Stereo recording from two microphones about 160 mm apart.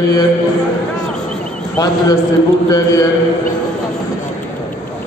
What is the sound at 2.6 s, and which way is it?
Speech, 25° left (ahead or behind).